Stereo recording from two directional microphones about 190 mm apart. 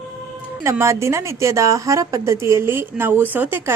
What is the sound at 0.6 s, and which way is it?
A woman's voice, 15° right (ahead or behind).